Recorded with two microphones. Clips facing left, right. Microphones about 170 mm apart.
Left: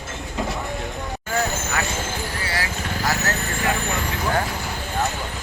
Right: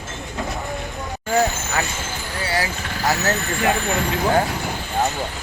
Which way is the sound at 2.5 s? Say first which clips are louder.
Right 3 dB; 30° right (ahead or behind).